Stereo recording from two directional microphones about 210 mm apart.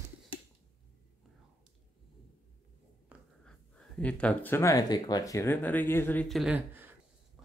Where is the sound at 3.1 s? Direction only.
5° right (ahead or behind).